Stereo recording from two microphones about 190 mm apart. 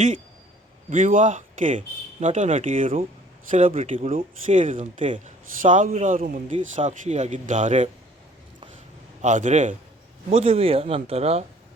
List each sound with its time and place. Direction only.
0.9 s speech: 45° right (ahead or behind)
9.2 s speech: 40° right (ahead or behind)